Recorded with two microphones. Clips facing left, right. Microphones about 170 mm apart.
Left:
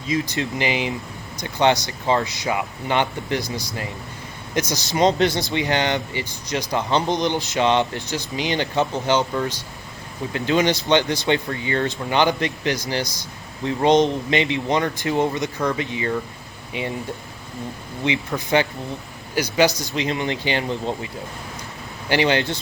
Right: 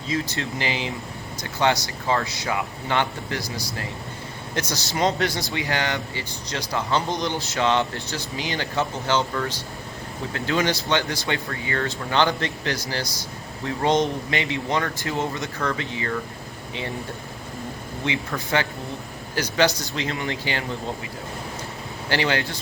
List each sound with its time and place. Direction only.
0.1 s speech: 15° left (ahead or behind)
18.0 s speech: 20° left (ahead or behind)
22.1 s speech: 20° left (ahead or behind)